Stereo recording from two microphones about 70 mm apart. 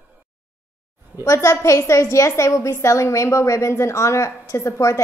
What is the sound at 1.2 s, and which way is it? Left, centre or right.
A woman's voice, left.